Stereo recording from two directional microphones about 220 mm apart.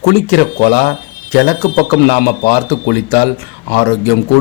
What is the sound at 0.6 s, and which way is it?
Speech, 45° left (ahead or behind).